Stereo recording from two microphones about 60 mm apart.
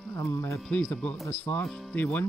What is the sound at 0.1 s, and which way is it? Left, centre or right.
Speech, left.